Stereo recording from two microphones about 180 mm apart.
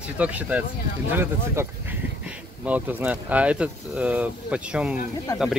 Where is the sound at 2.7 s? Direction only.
10° right (ahead or behind).